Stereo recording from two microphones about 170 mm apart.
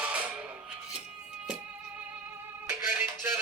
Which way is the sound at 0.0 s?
10° right (ahead or behind).